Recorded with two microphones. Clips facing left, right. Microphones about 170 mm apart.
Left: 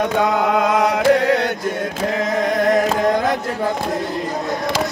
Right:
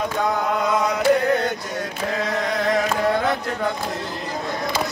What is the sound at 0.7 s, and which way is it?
Chant, 80° left.